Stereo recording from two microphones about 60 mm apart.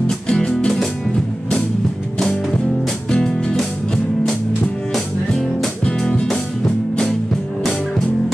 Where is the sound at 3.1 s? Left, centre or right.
Centre.